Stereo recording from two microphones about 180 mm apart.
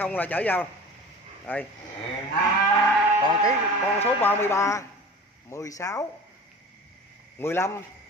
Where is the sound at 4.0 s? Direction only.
10° left (ahead or behind).